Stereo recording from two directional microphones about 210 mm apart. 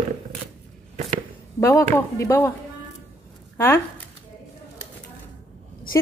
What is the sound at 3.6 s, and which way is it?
Speech, 10° left (ahead or behind).